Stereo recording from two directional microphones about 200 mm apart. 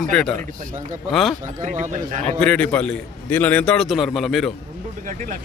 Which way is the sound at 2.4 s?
5° left (ahead or behind).